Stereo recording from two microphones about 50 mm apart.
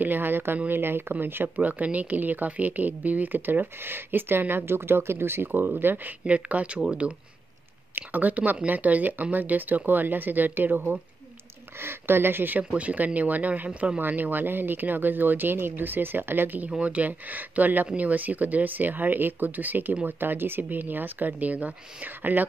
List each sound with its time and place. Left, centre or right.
0.0 s speech: right
6.2 s speech: right
7.9 s speech: right
11.8 s speech: right
12.5 s speech: right
14.0 s speech: right